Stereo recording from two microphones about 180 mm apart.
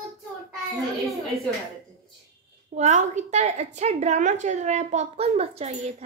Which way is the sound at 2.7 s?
40° right (ahead or behind).